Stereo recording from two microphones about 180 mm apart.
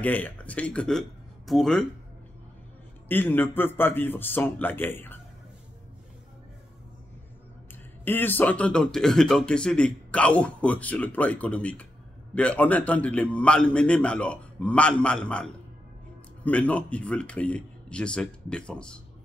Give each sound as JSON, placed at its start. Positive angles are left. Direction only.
{"t": 0.0, "sound": "speech", "side_deg": 10}
{"t": 3.1, "sound": "speech", "side_deg": 10}
{"t": 8.0, "sound": "speech", "side_deg": 10}